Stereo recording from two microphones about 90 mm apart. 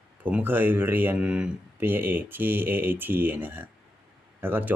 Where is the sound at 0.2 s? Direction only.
20° right (ahead or behind).